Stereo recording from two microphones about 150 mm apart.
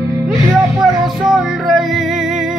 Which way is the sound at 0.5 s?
Centre (ahead or behind).